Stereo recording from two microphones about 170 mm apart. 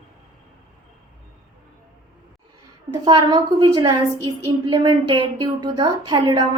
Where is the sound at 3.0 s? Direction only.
25° right (ahead or behind).